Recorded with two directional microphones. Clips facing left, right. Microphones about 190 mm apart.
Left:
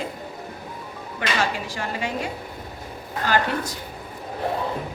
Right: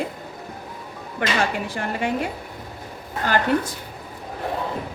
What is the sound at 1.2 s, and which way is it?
Speech, 55° right (ahead or behind).